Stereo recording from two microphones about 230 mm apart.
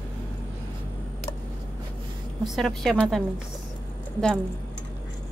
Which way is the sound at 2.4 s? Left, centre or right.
Centre.